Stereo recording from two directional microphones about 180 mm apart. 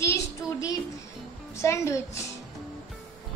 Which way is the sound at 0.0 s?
15° left (ahead or behind).